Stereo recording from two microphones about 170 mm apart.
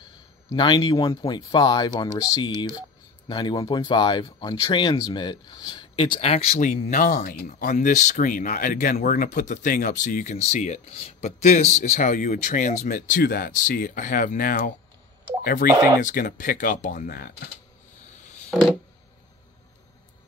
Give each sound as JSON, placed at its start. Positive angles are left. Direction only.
{"t": 0.5, "sound": "speech", "side_deg": 25}
{"t": 15.7, "sound": "speech", "side_deg": -20}
{"t": 16.0, "sound": "speech", "side_deg": 50}